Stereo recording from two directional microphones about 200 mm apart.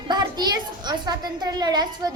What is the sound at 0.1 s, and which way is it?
A child's voice, 20° right (ahead or behind).